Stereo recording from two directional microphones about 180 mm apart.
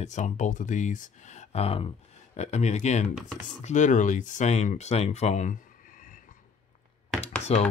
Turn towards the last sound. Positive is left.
turn(degrees=35)  # may be behind; listen again after turning